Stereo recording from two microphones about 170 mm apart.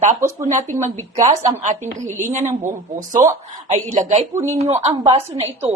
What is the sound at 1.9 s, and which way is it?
Speech, 45° right (ahead or behind).